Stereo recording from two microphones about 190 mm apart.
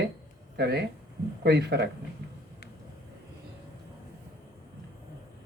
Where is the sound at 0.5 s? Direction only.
60° right (ahead or behind).